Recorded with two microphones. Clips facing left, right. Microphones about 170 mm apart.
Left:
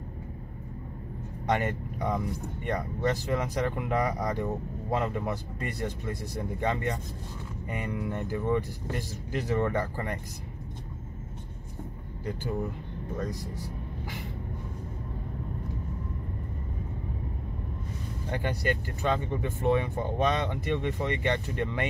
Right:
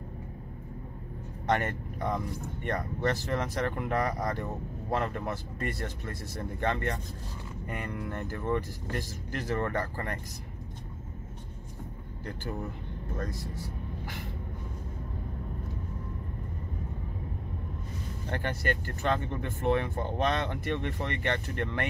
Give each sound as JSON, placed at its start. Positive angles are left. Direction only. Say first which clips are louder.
{"t": 1.5, "sound": "speech", "louder": "left 1 dB", "side_deg": 15}
{"t": 18.3, "sound": "speech", "louder": "left 2 dB", "side_deg": 15}